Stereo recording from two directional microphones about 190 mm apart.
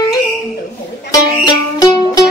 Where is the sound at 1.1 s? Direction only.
20° left (ahead or behind).